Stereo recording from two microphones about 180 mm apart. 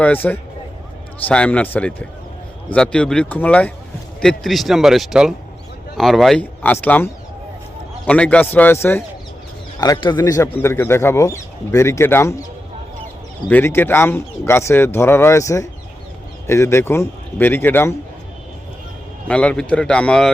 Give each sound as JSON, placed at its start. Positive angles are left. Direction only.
{"t": 0.0, "sound": "speech", "side_deg": 10}
{"t": 13.5, "sound": "speech", "side_deg": 10}
{"t": 19.3, "sound": "speech", "side_deg": 5}